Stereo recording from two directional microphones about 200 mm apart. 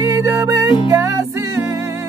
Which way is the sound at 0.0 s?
15° right (ahead or behind).